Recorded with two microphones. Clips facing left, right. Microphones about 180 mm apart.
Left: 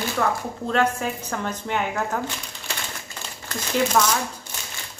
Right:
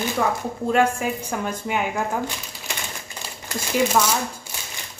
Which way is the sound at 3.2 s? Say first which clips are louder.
Right 2 dB; 15° right (ahead or behind).